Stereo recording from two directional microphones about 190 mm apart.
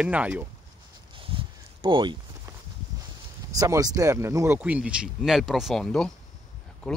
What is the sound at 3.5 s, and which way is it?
Speech, 15° right (ahead or behind).